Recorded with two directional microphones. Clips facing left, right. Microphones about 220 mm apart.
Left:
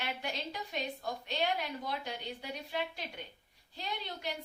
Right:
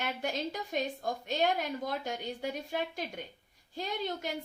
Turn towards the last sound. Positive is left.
turn(degrees=-45)  # may be behind; listen again after turning